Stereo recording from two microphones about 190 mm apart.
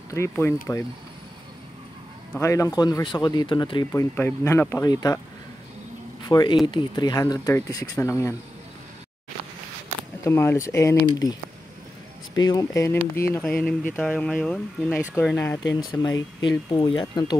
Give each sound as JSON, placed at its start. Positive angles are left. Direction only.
{"t": 0.1, "sound": "speech", "side_deg": 15}
{"t": 2.3, "sound": "speech", "side_deg": 15}
{"t": 6.2, "sound": "speech", "side_deg": 25}
{"t": 10.2, "sound": "speech", "side_deg": 15}
{"t": 12.4, "sound": "speech", "side_deg": 20}